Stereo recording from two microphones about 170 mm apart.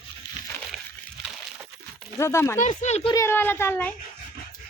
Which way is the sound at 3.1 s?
15° left (ahead or behind).